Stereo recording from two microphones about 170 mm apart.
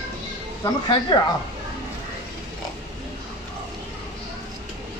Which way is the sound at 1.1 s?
25° left (ahead or behind).